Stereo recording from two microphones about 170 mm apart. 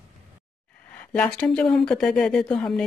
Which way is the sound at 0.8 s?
10° left (ahead or behind).